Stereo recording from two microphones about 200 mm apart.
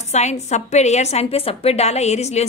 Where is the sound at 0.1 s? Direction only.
35° left (ahead or behind).